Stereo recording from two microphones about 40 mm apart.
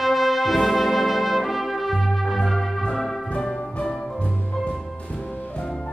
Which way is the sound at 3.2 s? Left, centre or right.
Left.